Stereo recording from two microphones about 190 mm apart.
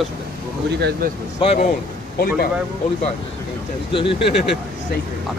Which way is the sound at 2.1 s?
50° left (ahead or behind).